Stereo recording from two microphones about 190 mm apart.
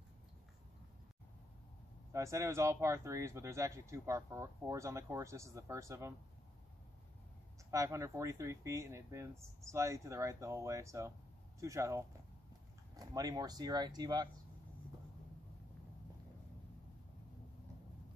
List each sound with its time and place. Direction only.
2.1 s speech: 15° right (ahead or behind)
7.7 s speech: 15° right (ahead or behind)